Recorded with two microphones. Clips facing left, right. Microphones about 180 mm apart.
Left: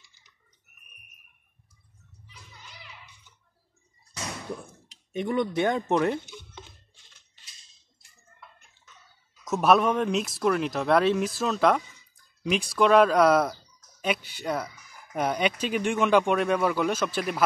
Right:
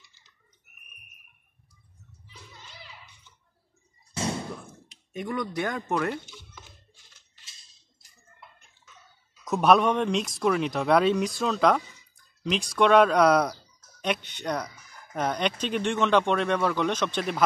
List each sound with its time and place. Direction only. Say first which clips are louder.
2.2 s music: right 2 dB; 30° right (ahead or behind)
4.1 s a sound: right 7 dB; 30° right (ahead or behind)
5.1 s speech: left 4 dB; 25° left (ahead or behind)
9.4 s speech: right 1 dB; centre (ahead or behind)